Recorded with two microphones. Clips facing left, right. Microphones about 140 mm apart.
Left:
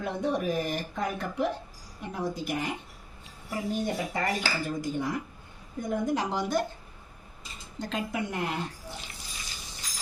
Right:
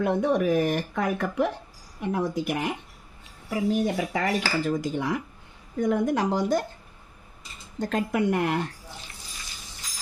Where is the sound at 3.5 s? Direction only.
90° right.